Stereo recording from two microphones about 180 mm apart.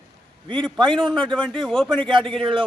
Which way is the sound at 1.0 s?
5° left (ahead or behind).